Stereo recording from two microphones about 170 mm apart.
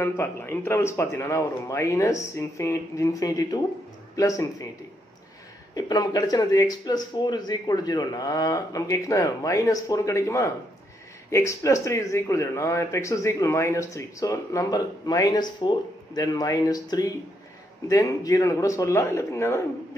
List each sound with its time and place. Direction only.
0.0 s speech: 15° left (ahead or behind)
5.8 s speech: 25° left (ahead or behind)